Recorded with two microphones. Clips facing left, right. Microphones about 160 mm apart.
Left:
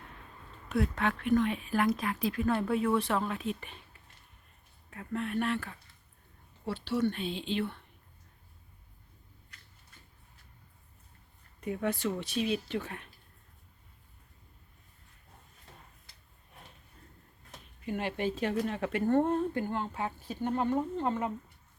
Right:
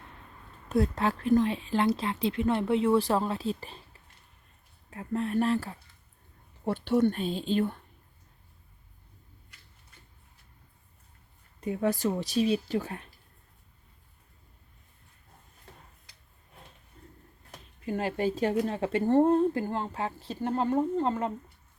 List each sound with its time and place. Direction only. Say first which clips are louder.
0.7 s speech: right 4 dB; 35° right (ahead or behind)
4.9 s speech: right 4 dB; 30° right (ahead or behind)
6.7 s speech: right 6 dB; 50° right (ahead or behind)
11.6 s speech: right 4 dB; 30° right (ahead or behind)
17.8 s speech: right 4 dB; 35° right (ahead or behind)